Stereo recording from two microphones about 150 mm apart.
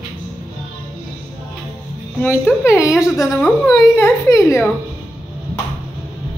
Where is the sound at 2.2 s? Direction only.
10° left (ahead or behind).